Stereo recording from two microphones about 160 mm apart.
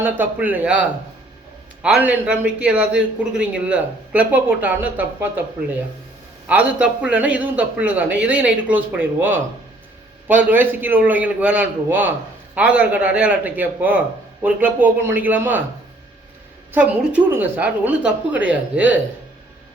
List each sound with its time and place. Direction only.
0.0 s a man's voice: 10° right (ahead or behind)
6.5 s a man's voice: 5° right (ahead or behind)
16.7 s a man's voice: 10° right (ahead or behind)